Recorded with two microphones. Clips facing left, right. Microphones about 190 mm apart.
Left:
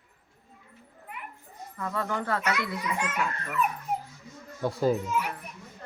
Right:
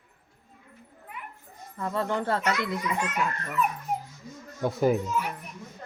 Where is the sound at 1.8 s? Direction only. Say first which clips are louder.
Right 3 dB; 25° right (ahead or behind).